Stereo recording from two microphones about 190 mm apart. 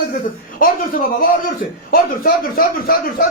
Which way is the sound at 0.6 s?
45° left (ahead or behind).